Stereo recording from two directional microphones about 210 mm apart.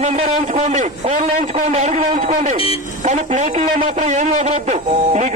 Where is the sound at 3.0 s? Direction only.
35° right (ahead or behind).